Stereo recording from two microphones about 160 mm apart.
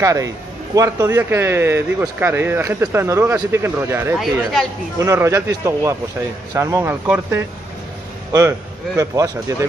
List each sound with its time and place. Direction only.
0.0 s speech: 20° right (ahead or behind)
4.2 s speech: centre (ahead or behind)
4.9 s speech: 20° right (ahead or behind)